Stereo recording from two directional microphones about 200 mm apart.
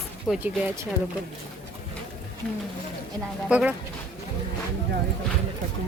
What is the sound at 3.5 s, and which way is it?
Speech, 5° right (ahead or behind).